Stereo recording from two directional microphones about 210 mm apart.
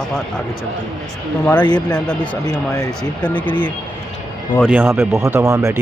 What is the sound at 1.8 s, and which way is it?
Speech, 5° left (ahead or behind).